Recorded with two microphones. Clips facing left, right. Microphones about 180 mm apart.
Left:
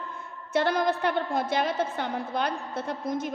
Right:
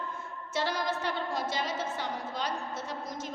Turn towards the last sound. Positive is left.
turn(degrees=55)  # may be behind; listen again after turning